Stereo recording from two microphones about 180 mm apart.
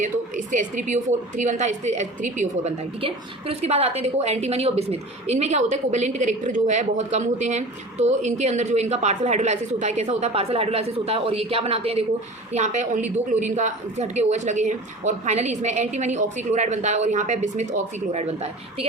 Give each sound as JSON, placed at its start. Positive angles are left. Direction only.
{"t": 0.0, "sound": "a woman's voice", "side_deg": -45}